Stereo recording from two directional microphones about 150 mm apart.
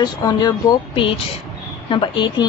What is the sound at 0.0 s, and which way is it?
A woman's voice, 25° left (ahead or behind).